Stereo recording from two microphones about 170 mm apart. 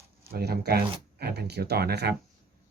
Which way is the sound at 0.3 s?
65° right (ahead or behind).